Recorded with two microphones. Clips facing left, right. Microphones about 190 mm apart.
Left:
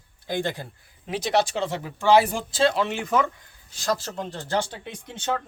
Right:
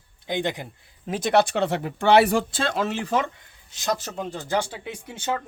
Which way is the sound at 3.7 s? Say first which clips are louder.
Even; 20° right (ahead or behind).